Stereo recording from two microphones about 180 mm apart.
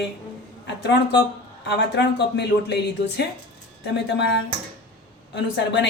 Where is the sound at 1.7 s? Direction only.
70° left (ahead or behind).